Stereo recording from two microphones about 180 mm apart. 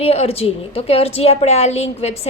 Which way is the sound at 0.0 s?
35° left (ahead or behind).